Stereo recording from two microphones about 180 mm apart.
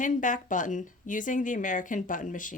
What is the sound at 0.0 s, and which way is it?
Speech, 45° left (ahead or behind).